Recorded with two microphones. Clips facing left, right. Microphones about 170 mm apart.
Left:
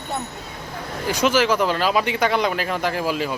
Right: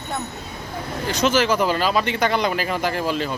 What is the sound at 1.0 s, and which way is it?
Speech, 10° left (ahead or behind).